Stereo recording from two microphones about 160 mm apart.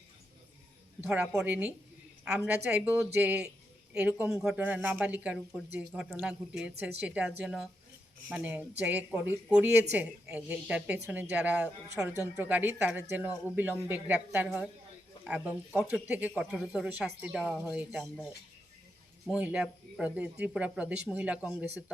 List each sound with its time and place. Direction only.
1.0 s speech: 10° right (ahead or behind)
19.3 s speech: 5° right (ahead or behind)